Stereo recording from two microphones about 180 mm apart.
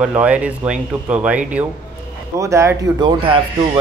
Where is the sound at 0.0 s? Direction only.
5° right (ahead or behind).